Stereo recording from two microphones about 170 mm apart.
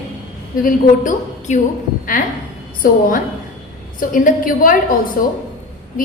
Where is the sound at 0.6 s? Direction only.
50° left (ahead or behind).